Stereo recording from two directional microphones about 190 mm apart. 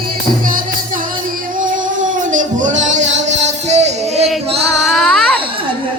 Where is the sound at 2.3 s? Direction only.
40° right (ahead or behind).